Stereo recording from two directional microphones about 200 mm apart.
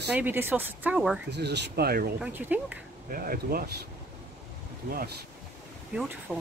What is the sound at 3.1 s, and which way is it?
Speech, 45° right (ahead or behind).